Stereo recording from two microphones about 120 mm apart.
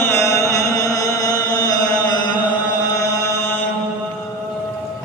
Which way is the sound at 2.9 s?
25° left (ahead or behind).